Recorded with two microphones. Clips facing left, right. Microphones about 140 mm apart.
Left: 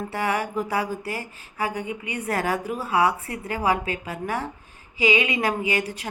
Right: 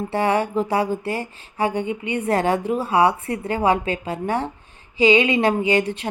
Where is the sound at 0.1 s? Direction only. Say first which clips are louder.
Right 7 dB; 30° right (ahead or behind).